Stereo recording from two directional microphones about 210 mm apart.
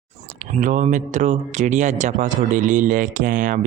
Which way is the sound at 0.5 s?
35° right (ahead or behind).